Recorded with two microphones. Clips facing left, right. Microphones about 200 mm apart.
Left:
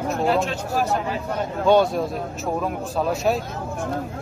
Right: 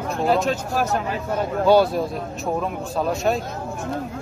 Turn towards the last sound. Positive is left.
turn(degrees=0)  # may be behind; listen again after turning